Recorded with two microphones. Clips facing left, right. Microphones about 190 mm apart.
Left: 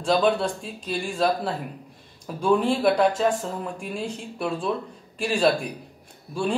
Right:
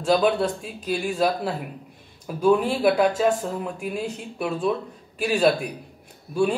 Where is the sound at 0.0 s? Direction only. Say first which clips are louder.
Right 1 dB; 10° right (ahead or behind).